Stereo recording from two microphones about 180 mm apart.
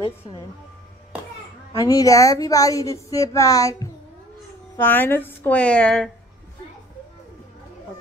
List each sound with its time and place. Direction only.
1.7 s a woman's voice: 20° left (ahead or behind)